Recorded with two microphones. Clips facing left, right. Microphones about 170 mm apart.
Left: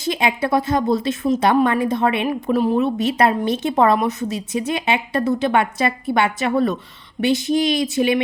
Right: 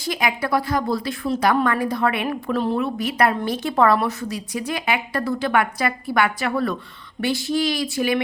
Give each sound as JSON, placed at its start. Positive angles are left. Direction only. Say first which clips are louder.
{"t": 0.0, "sound": "a woman's voice", "louder": "left 3 dB", "side_deg": 25}